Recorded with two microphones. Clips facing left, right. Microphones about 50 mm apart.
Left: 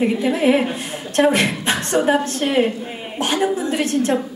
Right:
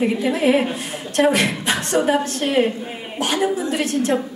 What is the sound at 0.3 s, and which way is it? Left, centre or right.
A woman's voice, left.